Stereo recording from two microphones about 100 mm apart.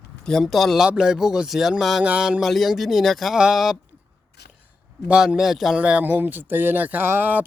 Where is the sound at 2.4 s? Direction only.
Centre (ahead or behind).